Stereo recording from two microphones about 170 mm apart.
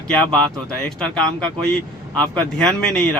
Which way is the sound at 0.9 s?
5° left (ahead or behind).